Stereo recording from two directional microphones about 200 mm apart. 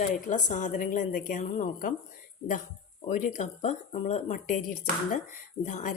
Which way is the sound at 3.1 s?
35° left (ahead or behind).